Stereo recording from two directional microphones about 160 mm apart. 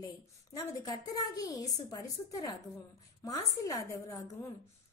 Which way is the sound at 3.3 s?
20° left (ahead or behind).